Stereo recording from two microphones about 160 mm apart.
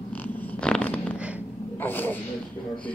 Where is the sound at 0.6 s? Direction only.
5° left (ahead or behind).